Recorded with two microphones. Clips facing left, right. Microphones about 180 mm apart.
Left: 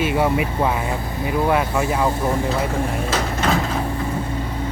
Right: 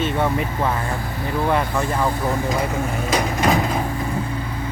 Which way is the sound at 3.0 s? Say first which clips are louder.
Right 6 dB; 15° right (ahead or behind).